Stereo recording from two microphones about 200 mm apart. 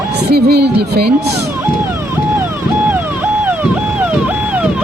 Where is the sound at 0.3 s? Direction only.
50° right (ahead or behind).